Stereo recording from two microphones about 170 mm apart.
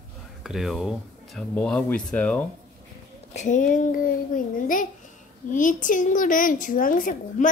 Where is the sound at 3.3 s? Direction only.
45° left (ahead or behind).